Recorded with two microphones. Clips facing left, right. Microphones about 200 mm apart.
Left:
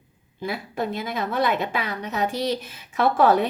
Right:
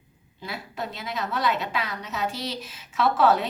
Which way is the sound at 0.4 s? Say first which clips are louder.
Left 7 dB; 55° left (ahead or behind).